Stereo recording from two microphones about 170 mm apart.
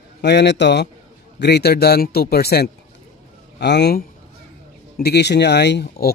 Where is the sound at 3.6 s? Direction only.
80° left.